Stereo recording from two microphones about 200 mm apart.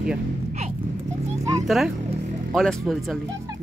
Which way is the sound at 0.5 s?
35° right (ahead or behind).